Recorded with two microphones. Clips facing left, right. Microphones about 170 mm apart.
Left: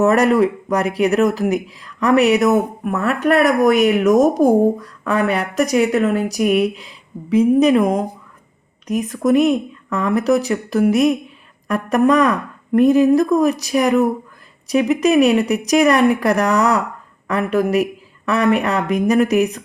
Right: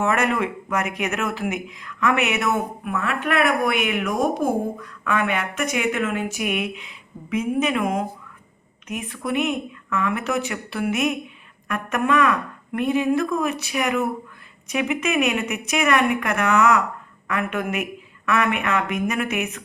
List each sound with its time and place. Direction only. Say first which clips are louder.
0.0 s speech: left 8 dB; 40° left (ahead or behind)